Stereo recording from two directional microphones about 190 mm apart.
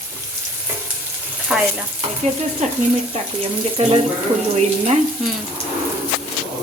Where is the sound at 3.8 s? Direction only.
35° right (ahead or behind).